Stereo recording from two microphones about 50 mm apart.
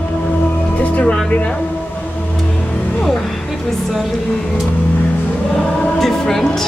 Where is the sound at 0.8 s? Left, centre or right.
Left.